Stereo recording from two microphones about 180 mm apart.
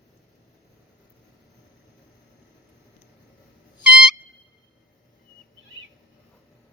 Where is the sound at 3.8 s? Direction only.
5° right (ahead or behind).